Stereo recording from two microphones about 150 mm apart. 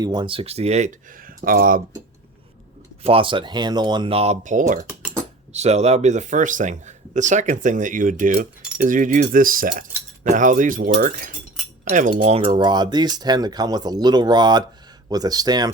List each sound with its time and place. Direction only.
0.0 s speech: 30° right (ahead or behind); by 1.8 s 70° right (ahead or behind)
3.0 s speech: 40° right (ahead or behind); by 4.8 s 60° right (ahead or behind)
5.5 s speech: 45° right (ahead or behind); by 9.8 s 70° right (ahead or behind)
10.2 s speech: 60° right (ahead or behind)
12.3 s speech: 40° right (ahead or behind)